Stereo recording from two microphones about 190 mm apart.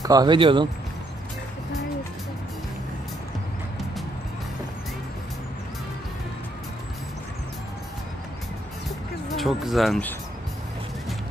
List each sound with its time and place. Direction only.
0.0 s speech: 20° right (ahead or behind)
9.3 s speech: centre (ahead or behind)